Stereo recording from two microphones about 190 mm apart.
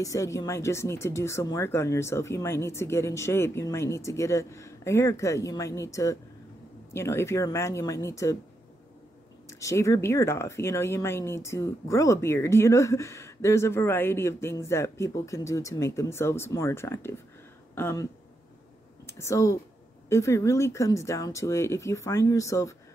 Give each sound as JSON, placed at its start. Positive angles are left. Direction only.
{"t": 0.0, "sound": "speech", "side_deg": 15}
{"t": 9.5, "sound": "speech", "side_deg": 15}
{"t": 19.0, "sound": "speech", "side_deg": 15}